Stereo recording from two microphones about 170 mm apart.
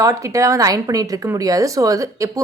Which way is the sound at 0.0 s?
20° right (ahead or behind).